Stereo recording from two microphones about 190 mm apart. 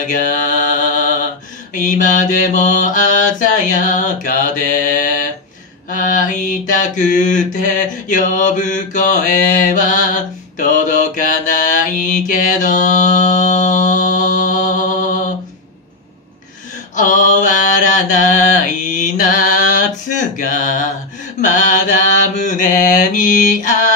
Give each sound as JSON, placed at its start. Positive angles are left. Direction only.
{"t": 0.0, "sound": "mantra", "side_deg": 40}
{"t": 16.9, "sound": "mantra", "side_deg": 40}